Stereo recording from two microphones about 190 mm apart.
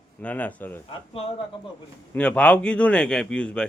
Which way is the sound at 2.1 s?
5° left (ahead or behind).